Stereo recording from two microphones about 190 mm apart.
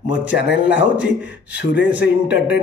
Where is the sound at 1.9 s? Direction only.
10° right (ahead or behind).